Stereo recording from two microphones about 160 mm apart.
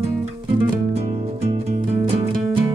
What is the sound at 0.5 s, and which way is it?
Music, 35° right (ahead or behind).